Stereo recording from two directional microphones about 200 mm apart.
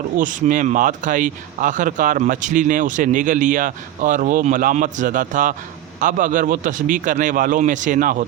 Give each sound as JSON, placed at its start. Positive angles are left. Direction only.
{"t": 0.2, "sound": "speech", "side_deg": -40}